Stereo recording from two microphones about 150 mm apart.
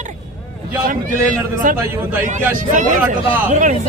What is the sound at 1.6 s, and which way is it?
Speech, 65° right (ahead or behind).